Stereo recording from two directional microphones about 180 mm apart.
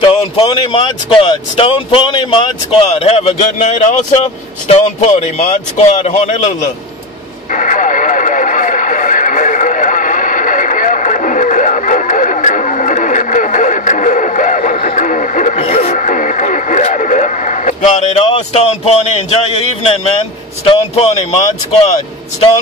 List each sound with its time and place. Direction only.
0.0 s speech: 30° left (ahead or behind)
3.0 s a man's voice: 35° left (ahead or behind)
7.5 s radio: 45° left (ahead or behind); by 21.4 s 30° left (ahead or behind)